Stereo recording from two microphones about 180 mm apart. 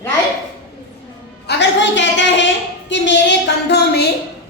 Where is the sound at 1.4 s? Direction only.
80° left.